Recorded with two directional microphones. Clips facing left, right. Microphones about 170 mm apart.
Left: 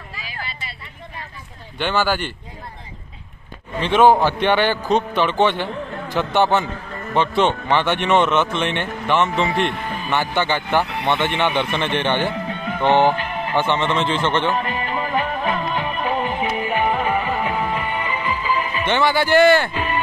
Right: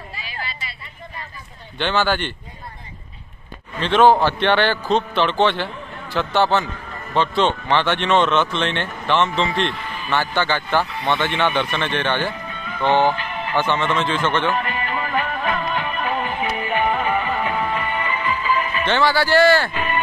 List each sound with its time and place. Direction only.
1.8 s a man's voice: 10° left (ahead or behind)
3.7 s a man's voice: 15° left (ahead or behind)
9.7 s speech: 40° left (ahead or behind)
10.0 s a man's voice: 15° left (ahead or behind)
12.4 s music: 70° left (ahead or behind)
12.8 s a man's voice: 15° left (ahead or behind)
13.1 s music: 45° left (ahead or behind)
13.6 s music: 20° left (ahead or behind)